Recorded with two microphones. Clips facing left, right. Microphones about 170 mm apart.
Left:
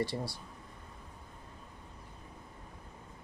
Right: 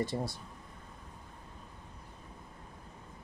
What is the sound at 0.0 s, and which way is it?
Speech, 20° right (ahead or behind).